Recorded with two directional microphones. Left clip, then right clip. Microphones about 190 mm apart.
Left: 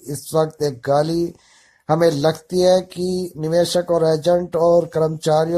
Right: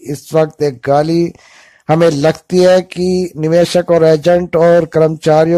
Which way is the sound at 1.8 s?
35° right (ahead or behind).